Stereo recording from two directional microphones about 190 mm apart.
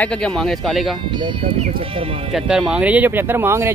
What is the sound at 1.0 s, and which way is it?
Speech, 25° right (ahead or behind).